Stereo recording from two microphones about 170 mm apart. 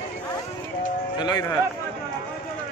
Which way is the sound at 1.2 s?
25° left (ahead or behind).